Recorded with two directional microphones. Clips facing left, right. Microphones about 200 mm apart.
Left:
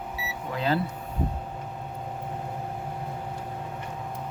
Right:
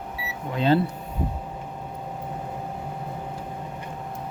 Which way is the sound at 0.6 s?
25° right (ahead or behind).